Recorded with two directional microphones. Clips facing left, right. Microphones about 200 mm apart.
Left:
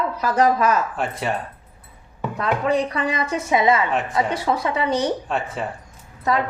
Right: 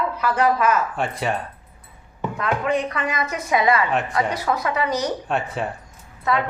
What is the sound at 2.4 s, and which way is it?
A woman's voice, 35° left (ahead or behind).